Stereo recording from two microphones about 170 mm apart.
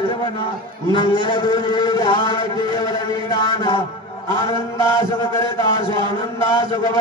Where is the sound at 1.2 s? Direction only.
25° left (ahead or behind).